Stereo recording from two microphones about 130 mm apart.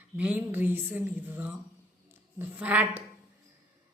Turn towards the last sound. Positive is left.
turn(degrees=-15)  # may be behind; listen again after turning